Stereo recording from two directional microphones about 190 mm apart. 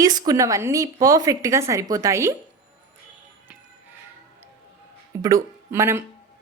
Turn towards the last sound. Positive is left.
turn(degrees=-15)  # may be behind; listen again after turning